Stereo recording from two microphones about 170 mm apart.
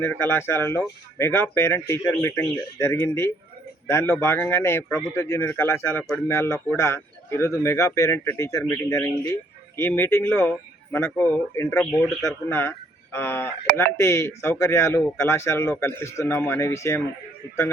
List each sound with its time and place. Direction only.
0.0 s a man's voice: 10° left (ahead or behind)